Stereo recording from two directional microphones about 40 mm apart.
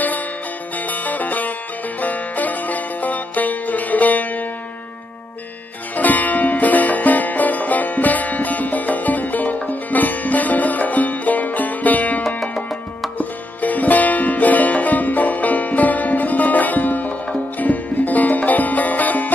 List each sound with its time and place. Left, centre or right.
0.7 s music: left
5.9 s music: left
13.2 s music: left